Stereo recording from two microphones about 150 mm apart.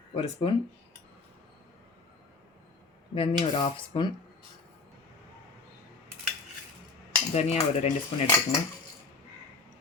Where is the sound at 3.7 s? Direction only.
35° left (ahead or behind).